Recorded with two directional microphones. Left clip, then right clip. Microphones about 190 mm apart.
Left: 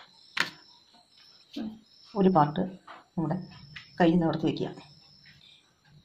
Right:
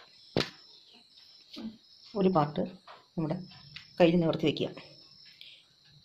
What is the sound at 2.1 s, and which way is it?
Speech, 15° right (ahead or behind).